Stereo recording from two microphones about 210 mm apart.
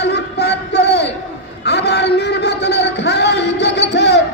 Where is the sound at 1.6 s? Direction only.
55° left (ahead or behind).